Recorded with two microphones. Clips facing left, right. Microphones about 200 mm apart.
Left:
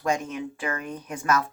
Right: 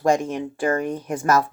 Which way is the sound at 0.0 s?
45° right (ahead or behind).